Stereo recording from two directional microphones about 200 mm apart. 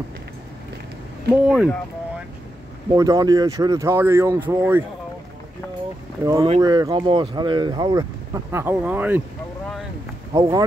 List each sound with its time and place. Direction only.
1.3 s speech: 5° right (ahead or behind)
2.9 s speech: 20° right (ahead or behind)
6.4 s speech: 25° right (ahead or behind)
10.3 s speech: 15° right (ahead or behind)